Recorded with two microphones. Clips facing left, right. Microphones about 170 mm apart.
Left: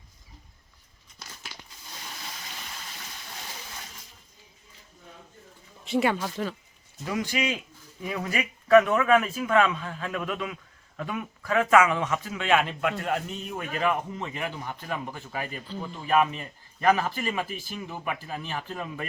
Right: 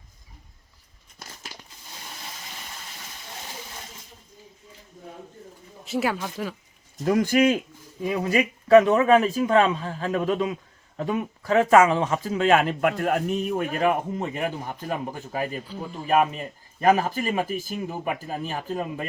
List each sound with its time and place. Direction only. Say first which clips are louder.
5.8 s speech: left 1 dB; centre (ahead or behind)
7.0 s speech: right 9 dB; 50° right (ahead or behind)
8.0 s speech: right 7 dB; 25° right (ahead or behind)